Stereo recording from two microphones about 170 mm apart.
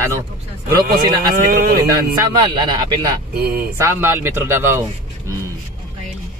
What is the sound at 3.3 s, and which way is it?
Speech, 65° right (ahead or behind).